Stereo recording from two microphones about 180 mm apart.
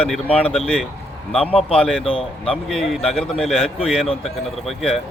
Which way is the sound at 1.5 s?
35° left (ahead or behind).